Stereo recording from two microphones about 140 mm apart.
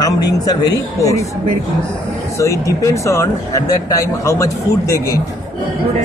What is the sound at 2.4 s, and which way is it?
Speech, 20° left (ahead or behind).